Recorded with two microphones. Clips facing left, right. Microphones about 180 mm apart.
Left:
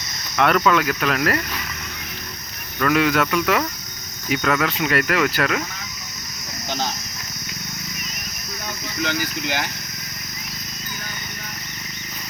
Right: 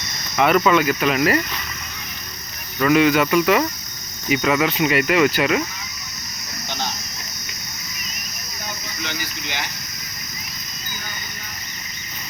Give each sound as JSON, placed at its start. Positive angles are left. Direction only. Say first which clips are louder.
{"t": 0.3, "sound": "cricket", "louder": "right 2 dB", "side_deg": -5}
{"t": 2.7, "sound": "cricket", "louder": "right 3 dB", "side_deg": -5}
{"t": 6.7, "sound": "a sound", "louder": "left 3 dB", "side_deg": 40}